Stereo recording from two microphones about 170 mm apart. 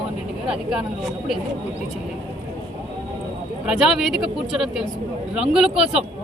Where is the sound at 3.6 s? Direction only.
5° right (ahead or behind).